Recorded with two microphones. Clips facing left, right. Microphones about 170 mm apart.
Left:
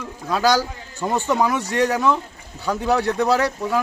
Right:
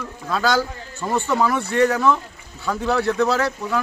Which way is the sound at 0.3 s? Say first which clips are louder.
Left 2 dB; 15° left (ahead or behind).